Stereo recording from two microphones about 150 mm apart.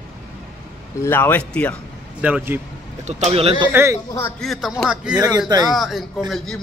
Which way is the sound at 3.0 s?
45° right (ahead or behind).